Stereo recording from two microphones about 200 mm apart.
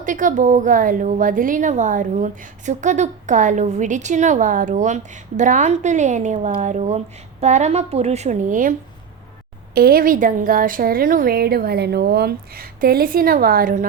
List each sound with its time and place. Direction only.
0.0 s a woman's voice: 40° right (ahead or behind)
9.7 s speech: 50° right (ahead or behind)